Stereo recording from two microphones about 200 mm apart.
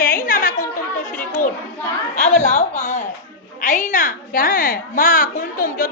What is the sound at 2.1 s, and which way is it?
A woman's voice, 45° left (ahead or behind).